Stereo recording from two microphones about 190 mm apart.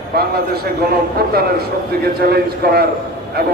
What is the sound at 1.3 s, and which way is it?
A man's voice, 55° right (ahead or behind).